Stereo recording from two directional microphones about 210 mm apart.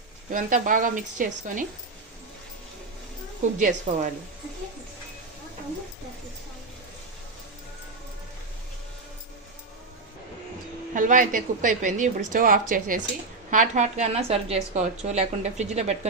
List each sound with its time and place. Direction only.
0.3 s a woman's voice: 40° right (ahead or behind)
3.5 s a woman's voice: 35° right (ahead or behind)
10.9 s a woman's voice: 40° right (ahead or behind)